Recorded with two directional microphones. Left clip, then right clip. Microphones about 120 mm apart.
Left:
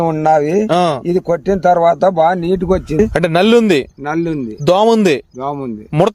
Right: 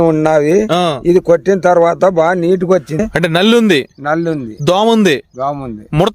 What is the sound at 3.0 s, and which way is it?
Speech, 30° right (ahead or behind).